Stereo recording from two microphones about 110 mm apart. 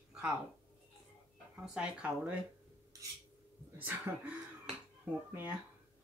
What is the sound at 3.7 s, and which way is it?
Speech, 15° right (ahead or behind).